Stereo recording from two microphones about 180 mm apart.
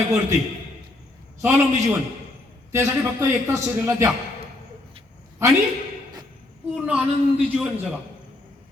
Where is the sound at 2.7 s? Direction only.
15° right (ahead or behind).